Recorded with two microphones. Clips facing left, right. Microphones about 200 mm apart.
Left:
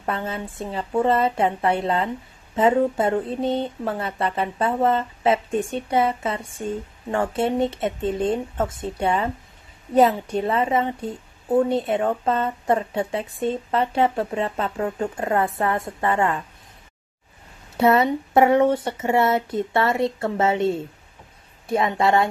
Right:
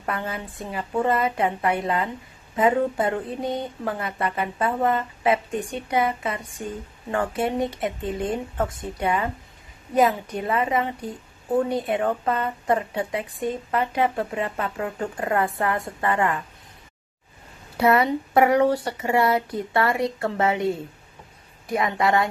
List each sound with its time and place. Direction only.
0.0 s speech: 25° left (ahead or behind)
17.7 s speech: 25° left (ahead or behind)